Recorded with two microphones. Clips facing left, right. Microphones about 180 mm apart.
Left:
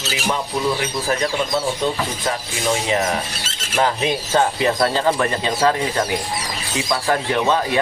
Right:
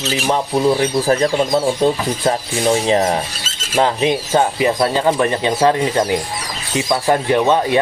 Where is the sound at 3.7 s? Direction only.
20° right (ahead or behind).